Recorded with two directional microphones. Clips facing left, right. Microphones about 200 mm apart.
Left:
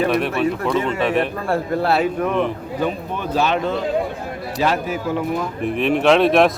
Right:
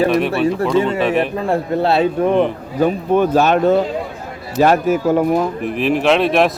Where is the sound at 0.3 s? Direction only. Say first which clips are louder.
Right 4 dB; 35° right (ahead or behind).